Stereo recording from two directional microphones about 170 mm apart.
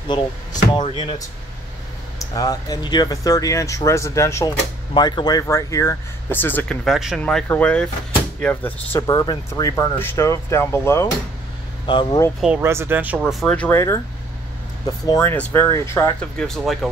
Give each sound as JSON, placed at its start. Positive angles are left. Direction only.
{"t": 0.1, "sound": "speech", "side_deg": 25}
{"t": 2.3, "sound": "speech", "side_deg": 20}
{"t": 9.0, "sound": "speech", "side_deg": 25}
{"t": 11.8, "sound": "speech", "side_deg": 30}
{"t": 12.4, "sound": "speech", "side_deg": -10}
{"t": 13.7, "sound": "speech", "side_deg": 15}
{"t": 15.0, "sound": "speech", "side_deg": 20}
{"t": 16.2, "sound": "speech", "side_deg": 5}